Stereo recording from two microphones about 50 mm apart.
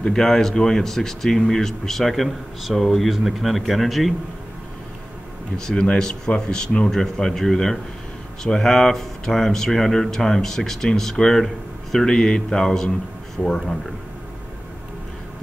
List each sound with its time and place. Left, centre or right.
0.0 s speech: centre
5.6 s speech: centre